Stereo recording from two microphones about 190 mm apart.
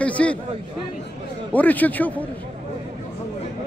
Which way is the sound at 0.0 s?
5° left (ahead or behind).